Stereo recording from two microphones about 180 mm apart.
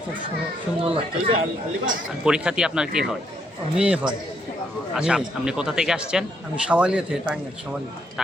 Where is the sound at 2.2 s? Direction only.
5° right (ahead or behind).